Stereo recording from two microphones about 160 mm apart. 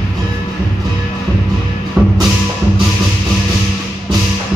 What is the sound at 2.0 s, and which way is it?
Music, 5° right (ahead or behind).